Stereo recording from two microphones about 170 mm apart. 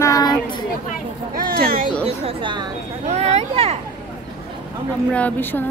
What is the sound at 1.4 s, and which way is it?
Speech, 60° right (ahead or behind).